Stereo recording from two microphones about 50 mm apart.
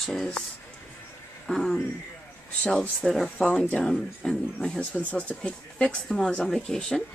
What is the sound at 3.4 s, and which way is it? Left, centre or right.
Speech, left.